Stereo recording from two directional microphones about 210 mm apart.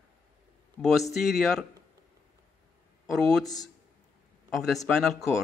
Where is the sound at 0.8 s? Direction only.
10° left (ahead or behind).